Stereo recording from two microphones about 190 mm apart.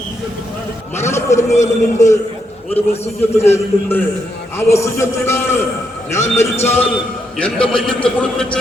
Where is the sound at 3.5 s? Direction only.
10° left (ahead or behind).